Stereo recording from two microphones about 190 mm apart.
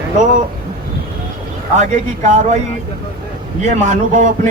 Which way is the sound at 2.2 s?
35° right (ahead or behind).